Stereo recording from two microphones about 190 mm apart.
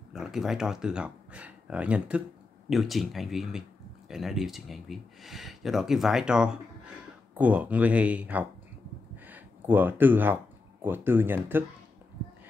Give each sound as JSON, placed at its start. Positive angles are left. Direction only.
{"t": 0.1, "sound": "speech", "side_deg": 0}